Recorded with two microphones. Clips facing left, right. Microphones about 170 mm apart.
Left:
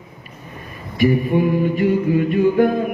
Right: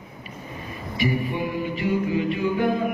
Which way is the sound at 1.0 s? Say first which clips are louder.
Left 9 dB; 50° left (ahead or behind).